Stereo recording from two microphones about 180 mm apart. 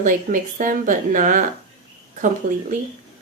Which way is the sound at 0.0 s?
45° right (ahead or behind).